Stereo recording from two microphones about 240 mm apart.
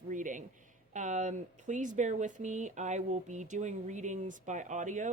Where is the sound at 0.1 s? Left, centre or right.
Right.